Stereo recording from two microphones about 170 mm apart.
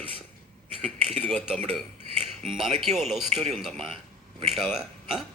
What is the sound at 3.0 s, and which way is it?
Speech, centre (ahead or behind).